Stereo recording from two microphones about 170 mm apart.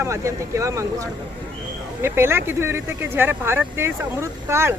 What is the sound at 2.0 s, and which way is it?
Speech, 15° right (ahead or behind).